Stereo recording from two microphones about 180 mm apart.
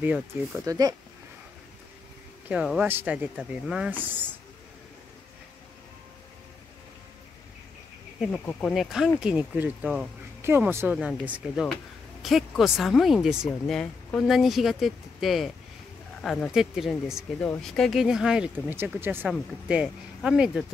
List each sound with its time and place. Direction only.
0.0 s speech: 10° right (ahead or behind)
2.4 s speech: 5° right (ahead or behind)
8.2 s speech: 5° left (ahead or behind)